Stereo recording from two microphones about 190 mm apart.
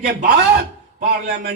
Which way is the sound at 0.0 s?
50° right (ahead or behind).